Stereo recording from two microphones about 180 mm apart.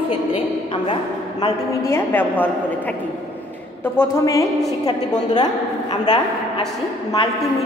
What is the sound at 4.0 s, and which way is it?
A man's voice, 15° left (ahead or behind).